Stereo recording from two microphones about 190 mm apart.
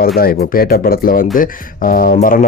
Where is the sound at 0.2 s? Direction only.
50° left (ahead or behind).